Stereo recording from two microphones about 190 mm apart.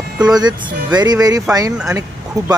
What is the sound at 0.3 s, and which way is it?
Speech, 20° right (ahead or behind).